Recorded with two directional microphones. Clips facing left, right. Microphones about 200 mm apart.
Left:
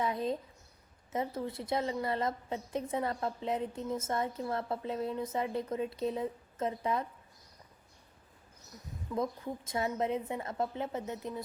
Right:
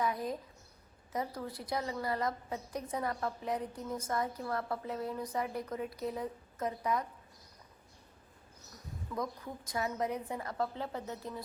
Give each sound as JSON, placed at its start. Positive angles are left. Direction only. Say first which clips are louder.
{"t": 0.0, "sound": "a sound", "louder": "left 2 dB", "side_deg": 25}
{"t": 1.1, "sound": "a woman's voice", "louder": "left 3 dB", "side_deg": 25}
{"t": 9.1, "sound": "a woman's voice", "louder": "left 4 dB", "side_deg": 25}